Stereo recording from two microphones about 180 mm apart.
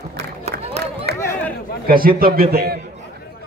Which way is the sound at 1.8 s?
55° right (ahead or behind).